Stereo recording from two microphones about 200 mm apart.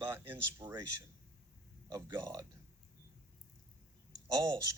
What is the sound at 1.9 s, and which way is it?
Speech, 20° right (ahead or behind).